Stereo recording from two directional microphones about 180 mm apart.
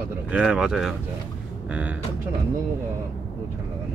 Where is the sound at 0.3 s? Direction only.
5° right (ahead or behind).